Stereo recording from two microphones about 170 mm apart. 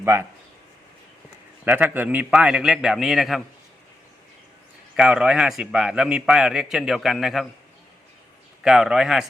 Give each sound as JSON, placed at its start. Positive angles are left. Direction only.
{"t": 0.0, "sound": "speech", "side_deg": -15}
{"t": 1.6, "sound": "a man's voice", "side_deg": -10}
{"t": 4.9, "sound": "a man's voice", "side_deg": -5}
{"t": 8.6, "sound": "a man's voice", "side_deg": -5}